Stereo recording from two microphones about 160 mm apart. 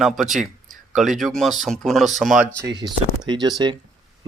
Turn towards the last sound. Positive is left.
turn(degrees=-25)  # may be behind; listen again after turning